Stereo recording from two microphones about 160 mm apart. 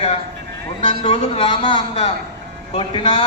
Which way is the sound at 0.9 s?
40° left (ahead or behind).